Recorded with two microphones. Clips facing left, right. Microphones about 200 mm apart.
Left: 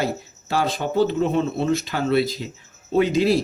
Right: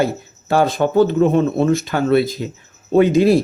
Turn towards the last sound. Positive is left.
turn(degrees=-55)  # may be behind; listen again after turning